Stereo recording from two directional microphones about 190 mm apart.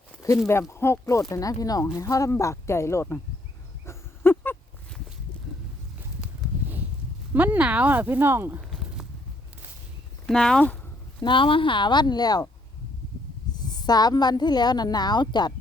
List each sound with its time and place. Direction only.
0.7 s speech: 15° left (ahead or behind)
3.8 s a sound: 10° left (ahead or behind)
7.3 s speech: 10° right (ahead or behind)
10.2 s speech: 5° left (ahead or behind)
11.2 s a woman's voice: 25° left (ahead or behind)
13.6 s a woman's voice: 20° left (ahead or behind)